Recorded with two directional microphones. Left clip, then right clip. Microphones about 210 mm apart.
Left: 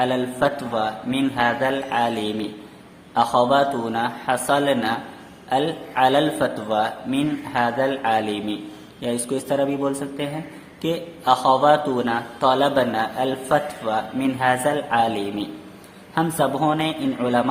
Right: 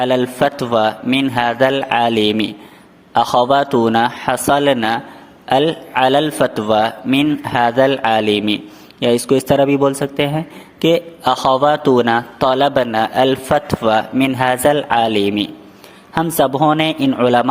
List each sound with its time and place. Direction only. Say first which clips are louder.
0.0 s a man's voice: right 6 dB; 40° right (ahead or behind)